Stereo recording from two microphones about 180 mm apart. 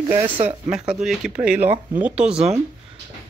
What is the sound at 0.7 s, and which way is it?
Speech, 5° right (ahead or behind).